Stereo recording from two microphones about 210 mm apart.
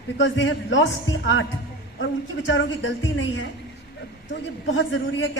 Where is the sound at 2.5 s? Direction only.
65° left (ahead or behind).